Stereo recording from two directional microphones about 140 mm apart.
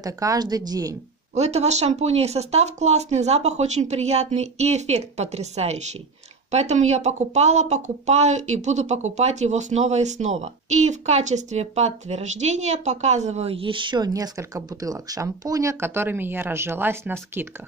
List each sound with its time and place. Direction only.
0.0 s a woman's voice: 25° right (ahead or behind)
1.3 s speech: 50° right (ahead or behind); by 17.5 s 15° right (ahead or behind)